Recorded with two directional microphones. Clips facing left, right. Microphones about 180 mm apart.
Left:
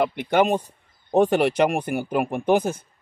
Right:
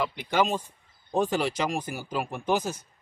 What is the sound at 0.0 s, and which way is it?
Speech, 55° left (ahead or behind).